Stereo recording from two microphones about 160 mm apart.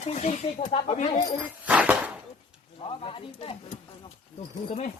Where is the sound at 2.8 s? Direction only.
35° left (ahead or behind).